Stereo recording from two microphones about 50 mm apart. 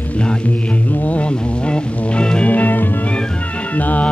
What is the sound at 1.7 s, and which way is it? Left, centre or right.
Music, left.